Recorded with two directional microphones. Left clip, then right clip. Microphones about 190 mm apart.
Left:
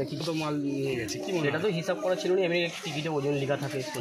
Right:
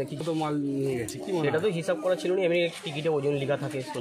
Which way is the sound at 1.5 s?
20° right (ahead or behind).